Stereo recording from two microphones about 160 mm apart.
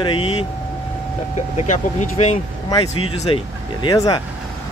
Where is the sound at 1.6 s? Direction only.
45° left (ahead or behind); by 4.2 s 25° left (ahead or behind).